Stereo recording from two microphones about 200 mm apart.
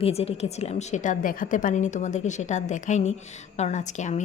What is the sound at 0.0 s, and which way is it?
A woman's voice, 30° left (ahead or behind).